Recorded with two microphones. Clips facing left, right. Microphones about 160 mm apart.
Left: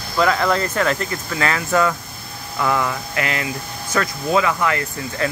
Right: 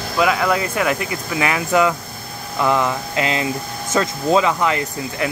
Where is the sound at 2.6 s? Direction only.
20° right (ahead or behind).